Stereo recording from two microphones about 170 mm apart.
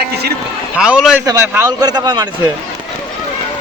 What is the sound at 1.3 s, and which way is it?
A man's voice, 20° right (ahead or behind).